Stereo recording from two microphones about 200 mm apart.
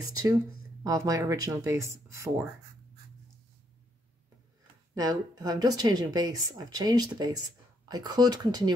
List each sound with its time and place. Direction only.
0.0 s speech: 15° right (ahead or behind)
4.9 s a woman's voice: 20° right (ahead or behind)